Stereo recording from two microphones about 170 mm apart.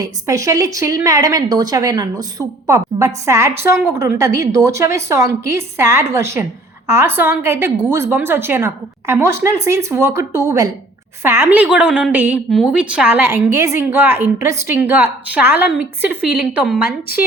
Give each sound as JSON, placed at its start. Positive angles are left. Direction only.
{"t": 0.0, "sound": "a woman's voice", "side_deg": -20}
{"t": 12.1, "sound": "a woman's voice", "side_deg": -10}